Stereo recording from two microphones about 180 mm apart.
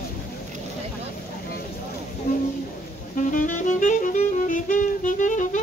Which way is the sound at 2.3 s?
55° left (ahead or behind).